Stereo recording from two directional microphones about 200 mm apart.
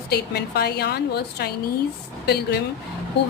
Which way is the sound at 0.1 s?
55° left (ahead or behind).